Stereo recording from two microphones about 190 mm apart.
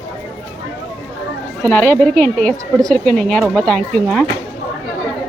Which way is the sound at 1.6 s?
5° left (ahead or behind).